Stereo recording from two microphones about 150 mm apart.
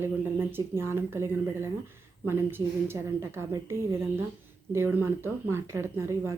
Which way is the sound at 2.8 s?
15° right (ahead or behind).